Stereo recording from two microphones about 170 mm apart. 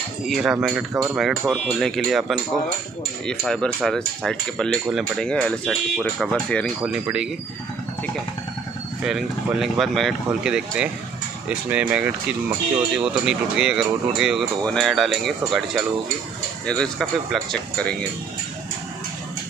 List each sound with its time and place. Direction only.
0.3 s speech: 5° right (ahead or behind)
6.8 s speech: 5° right (ahead or behind)
9.0 s speech: 5° right (ahead or behind)
11.9 s speech: 5° right (ahead or behind)